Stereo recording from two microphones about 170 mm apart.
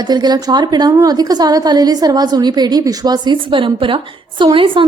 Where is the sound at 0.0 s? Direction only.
25° right (ahead or behind).